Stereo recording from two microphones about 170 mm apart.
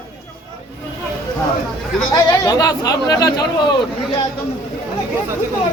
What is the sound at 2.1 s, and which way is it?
Speech, 20° left (ahead or behind).